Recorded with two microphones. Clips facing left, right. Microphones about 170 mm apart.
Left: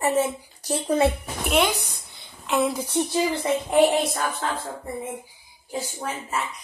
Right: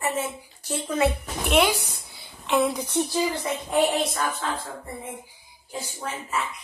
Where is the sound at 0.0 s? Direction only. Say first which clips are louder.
Left 6 dB; 35° left (ahead or behind).